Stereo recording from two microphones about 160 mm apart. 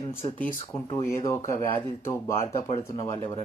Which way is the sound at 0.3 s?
10° left (ahead or behind).